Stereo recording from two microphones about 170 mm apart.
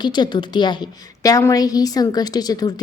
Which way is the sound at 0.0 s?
25° left (ahead or behind).